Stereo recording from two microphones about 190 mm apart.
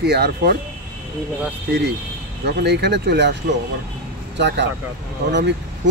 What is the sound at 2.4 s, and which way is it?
A man's voice, 60° right (ahead or behind).